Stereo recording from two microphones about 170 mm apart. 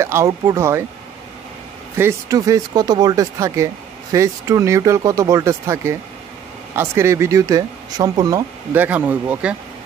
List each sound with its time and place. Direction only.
0.0 s speech: 15° right (ahead or behind)
2.0 s speech: 15° right (ahead or behind)